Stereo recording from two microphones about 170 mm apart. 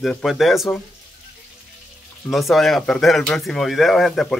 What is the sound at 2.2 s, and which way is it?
A man's voice, centre (ahead or behind).